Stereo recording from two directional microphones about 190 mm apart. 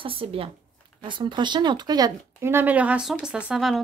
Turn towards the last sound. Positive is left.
turn(degrees=0)  # may be behind; listen again after turning